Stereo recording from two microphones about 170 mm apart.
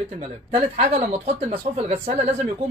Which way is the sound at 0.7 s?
40° right (ahead or behind).